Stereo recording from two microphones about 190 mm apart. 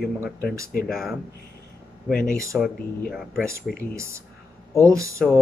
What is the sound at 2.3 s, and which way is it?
Speech, 15° right (ahead or behind).